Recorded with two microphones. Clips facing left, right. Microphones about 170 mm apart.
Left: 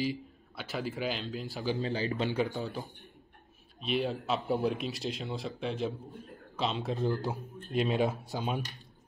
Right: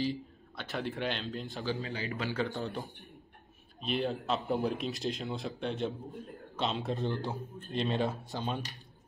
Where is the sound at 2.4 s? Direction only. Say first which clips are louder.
Even; centre (ahead or behind).